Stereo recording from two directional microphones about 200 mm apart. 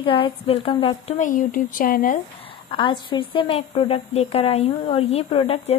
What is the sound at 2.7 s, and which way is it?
A woman's voice, 25° left (ahead or behind).